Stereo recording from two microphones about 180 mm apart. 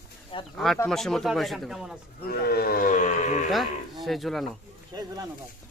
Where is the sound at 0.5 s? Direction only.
Centre (ahead or behind).